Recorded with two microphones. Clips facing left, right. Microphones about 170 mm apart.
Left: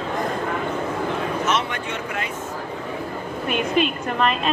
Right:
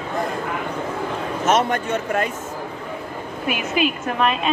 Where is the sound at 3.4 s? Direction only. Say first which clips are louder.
Left 1 dB; 5° right (ahead or behind).